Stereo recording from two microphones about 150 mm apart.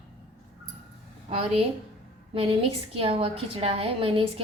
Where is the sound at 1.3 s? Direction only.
40° right (ahead or behind).